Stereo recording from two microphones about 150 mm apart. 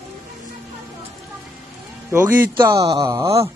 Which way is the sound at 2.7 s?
25° right (ahead or behind).